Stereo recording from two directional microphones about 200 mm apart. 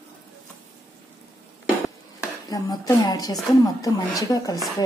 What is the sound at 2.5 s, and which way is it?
Speech, 20° left (ahead or behind).